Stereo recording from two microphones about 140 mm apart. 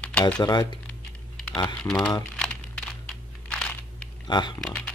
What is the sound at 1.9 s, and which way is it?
Speech, 5° left (ahead or behind).